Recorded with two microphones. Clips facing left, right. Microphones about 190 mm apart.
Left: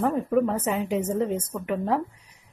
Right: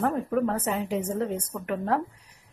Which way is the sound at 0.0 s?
Centre (ahead or behind).